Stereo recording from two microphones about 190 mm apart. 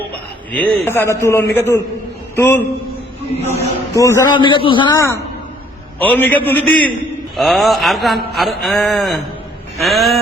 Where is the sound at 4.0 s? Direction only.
15° left (ahead or behind).